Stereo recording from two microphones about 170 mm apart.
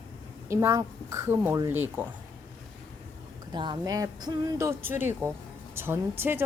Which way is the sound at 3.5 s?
25° right (ahead or behind).